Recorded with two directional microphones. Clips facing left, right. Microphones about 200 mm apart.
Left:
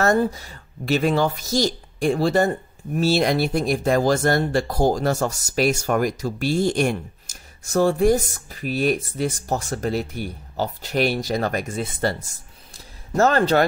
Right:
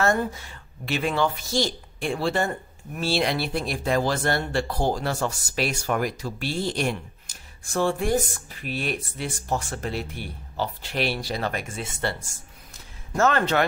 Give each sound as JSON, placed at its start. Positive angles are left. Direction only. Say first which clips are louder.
{"t": 0.0, "sound": "speech", "louder": "left 4 dB", "side_deg": 40}